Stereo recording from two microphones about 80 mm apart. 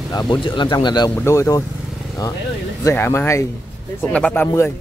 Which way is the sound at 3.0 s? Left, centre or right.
Left.